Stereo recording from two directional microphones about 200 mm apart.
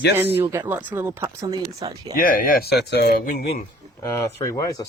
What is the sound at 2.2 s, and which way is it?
Speech, 45° left (ahead or behind).